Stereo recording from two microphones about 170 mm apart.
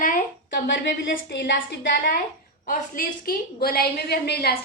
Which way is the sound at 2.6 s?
55° left (ahead or behind).